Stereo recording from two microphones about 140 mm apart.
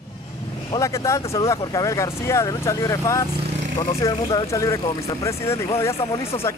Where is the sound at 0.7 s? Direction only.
20° left (ahead or behind).